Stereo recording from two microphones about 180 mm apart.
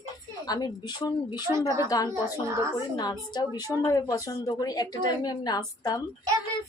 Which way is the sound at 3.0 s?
25° left (ahead or behind).